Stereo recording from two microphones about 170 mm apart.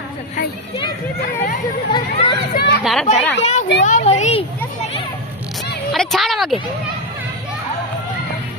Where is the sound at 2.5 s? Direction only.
75° left (ahead or behind).